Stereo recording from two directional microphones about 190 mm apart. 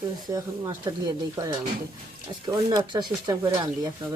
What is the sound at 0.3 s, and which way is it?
Speech, 20° right (ahead or behind).